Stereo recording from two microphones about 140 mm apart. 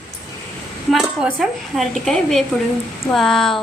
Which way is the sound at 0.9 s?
5° right (ahead or behind).